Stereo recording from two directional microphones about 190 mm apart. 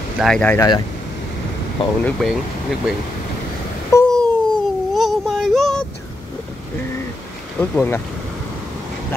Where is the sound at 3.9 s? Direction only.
15° left (ahead or behind).